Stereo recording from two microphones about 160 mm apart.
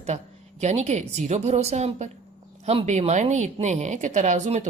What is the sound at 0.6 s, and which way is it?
A woman's voice, 45° right (ahead or behind).